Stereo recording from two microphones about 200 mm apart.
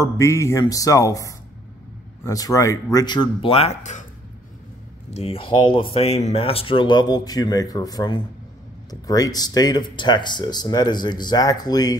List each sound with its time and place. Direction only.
0.2 s speech: 15° left (ahead or behind); by 4.0 s 35° left (ahead or behind)
5.1 s speech: 30° left (ahead or behind)